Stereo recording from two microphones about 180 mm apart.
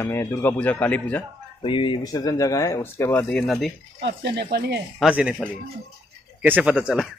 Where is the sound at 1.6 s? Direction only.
30° left (ahead or behind); by 3.7 s centre (ahead or behind).